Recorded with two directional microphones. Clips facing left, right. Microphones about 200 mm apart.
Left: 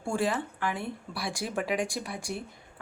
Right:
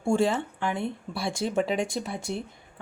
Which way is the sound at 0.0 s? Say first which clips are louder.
Right 5 dB; 25° right (ahead or behind).